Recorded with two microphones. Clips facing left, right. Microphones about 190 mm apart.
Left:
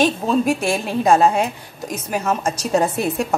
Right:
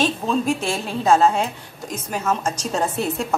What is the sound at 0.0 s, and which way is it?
A woman's voice, 10° left (ahead or behind).